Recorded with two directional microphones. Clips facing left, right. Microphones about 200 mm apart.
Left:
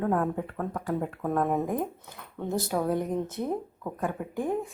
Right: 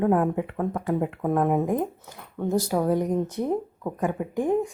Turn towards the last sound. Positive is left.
turn(degrees=-15)  # may be behind; listen again after turning